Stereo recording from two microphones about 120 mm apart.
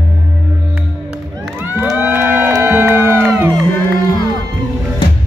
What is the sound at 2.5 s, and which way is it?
Music, 15° right (ahead or behind).